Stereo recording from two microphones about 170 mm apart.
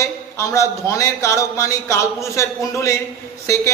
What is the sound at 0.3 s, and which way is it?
A man's voice, 15° left (ahead or behind).